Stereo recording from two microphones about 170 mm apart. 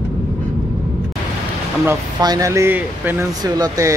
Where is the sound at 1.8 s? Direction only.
20° right (ahead or behind).